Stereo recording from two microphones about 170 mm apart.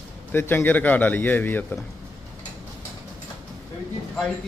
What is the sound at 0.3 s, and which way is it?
Speech, 10° left (ahead or behind).